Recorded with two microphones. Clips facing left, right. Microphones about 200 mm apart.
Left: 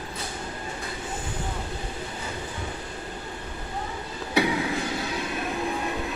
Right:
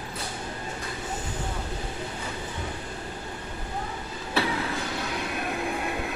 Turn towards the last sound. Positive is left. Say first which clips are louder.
# left 3 dB
turn(degrees=15)  # may be behind; listen again after turning